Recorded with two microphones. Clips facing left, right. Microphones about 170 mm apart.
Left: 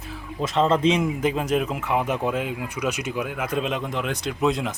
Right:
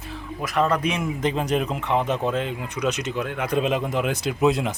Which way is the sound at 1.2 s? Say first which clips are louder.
Even; 5° left (ahead or behind).